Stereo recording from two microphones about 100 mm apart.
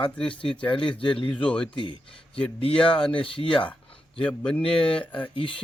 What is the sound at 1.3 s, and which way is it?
Speech, 10° left (ahead or behind).